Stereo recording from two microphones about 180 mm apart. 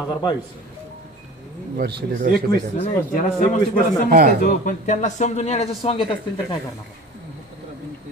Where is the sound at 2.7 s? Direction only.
35° left (ahead or behind).